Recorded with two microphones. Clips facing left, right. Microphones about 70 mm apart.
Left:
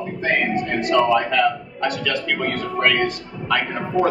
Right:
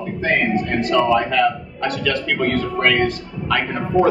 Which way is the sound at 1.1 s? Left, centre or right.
Centre.